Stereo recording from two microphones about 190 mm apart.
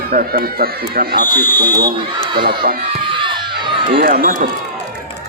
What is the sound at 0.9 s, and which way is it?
Speech, 55° right (ahead or behind).